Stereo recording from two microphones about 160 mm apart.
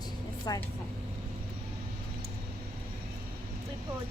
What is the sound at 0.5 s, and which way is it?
Speech, 25° left (ahead or behind).